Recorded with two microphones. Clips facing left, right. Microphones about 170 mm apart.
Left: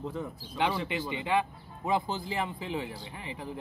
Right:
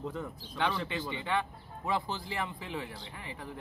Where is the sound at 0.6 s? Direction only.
15° left (ahead or behind).